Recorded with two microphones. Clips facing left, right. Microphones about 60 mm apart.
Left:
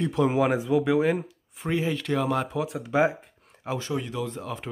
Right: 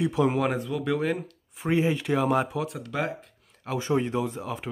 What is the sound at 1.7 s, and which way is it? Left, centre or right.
Speech, centre.